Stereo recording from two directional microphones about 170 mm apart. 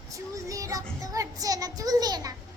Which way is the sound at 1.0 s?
20° right (ahead or behind).